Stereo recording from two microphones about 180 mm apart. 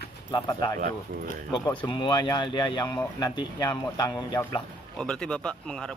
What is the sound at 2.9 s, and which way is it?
Speech, 10° left (ahead or behind).